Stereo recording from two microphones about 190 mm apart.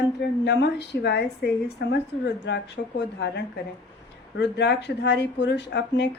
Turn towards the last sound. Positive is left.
turn(degrees=65)  # may be behind; listen again after turning